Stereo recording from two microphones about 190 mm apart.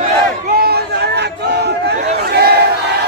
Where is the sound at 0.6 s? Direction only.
55° right (ahead or behind).